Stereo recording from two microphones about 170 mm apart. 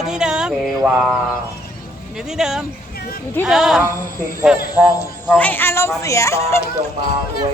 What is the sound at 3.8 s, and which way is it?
A woman's voice, 15° right (ahead or behind).